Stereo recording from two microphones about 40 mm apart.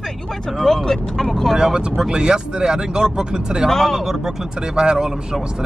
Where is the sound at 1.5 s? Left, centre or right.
Centre.